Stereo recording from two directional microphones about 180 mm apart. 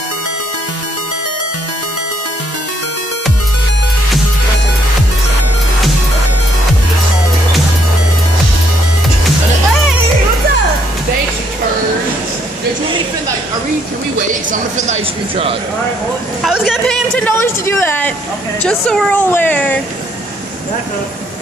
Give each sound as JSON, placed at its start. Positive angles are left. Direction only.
{"t": 14.5, "sound": "speech", "side_deg": -40}
{"t": 16.4, "sound": "speech", "side_deg": 0}